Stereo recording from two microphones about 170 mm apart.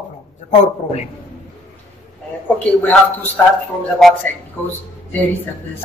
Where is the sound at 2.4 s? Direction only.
10° left (ahead or behind).